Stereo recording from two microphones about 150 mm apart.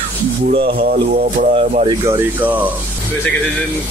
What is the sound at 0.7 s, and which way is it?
Speech, 90° right.